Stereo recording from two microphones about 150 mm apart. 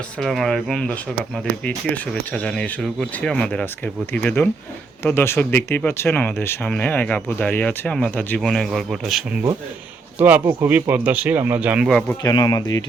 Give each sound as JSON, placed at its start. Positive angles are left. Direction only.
{"t": 0.2, "sound": "speech", "side_deg": 0}
{"t": 8.4, "sound": "speech", "side_deg": 0}
{"t": 11.9, "sound": "speech", "side_deg": 5}
{"t": 12.2, "sound": "speech", "side_deg": 25}